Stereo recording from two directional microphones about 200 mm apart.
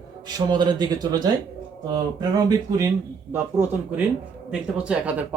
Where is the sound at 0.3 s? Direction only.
20° right (ahead or behind).